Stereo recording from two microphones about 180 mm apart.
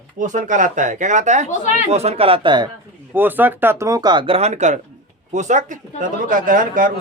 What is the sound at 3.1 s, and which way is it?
Speech, 10° right (ahead or behind).